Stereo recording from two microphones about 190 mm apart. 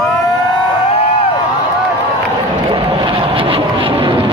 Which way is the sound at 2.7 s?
30° right (ahead or behind).